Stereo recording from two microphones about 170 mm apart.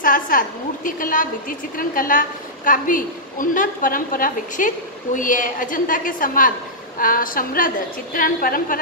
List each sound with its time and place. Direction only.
0.0 s a woman's voice: 50° left (ahead or behind)